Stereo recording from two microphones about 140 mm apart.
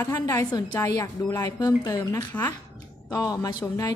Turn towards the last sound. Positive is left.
turn(degrees=25)  # may be behind; listen again after turning